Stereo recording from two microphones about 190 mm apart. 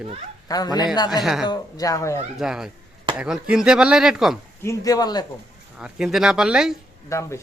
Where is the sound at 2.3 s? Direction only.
5° right (ahead or behind).